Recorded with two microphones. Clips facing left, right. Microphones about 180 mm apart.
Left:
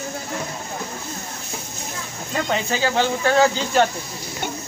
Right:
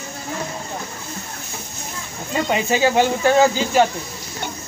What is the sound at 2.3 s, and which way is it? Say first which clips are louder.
Speech: right 3 dB; 15° right (ahead or behind).